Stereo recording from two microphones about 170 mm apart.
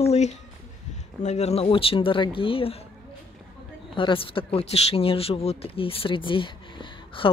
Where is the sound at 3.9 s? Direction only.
30° left (ahead or behind).